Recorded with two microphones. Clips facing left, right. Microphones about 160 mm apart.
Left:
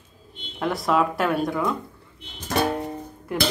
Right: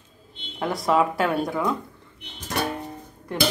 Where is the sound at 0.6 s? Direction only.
Centre (ahead or behind).